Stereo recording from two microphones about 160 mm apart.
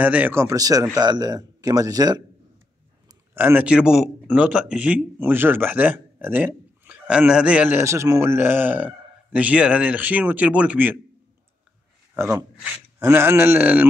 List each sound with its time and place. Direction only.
0.0 s speech: 10° right (ahead or behind)
3.3 s speech: 10° right (ahead or behind)
12.2 s speech: 15° right (ahead or behind)